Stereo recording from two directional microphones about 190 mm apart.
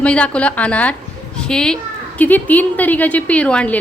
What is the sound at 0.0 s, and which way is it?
A woman's voice, 5° left (ahead or behind).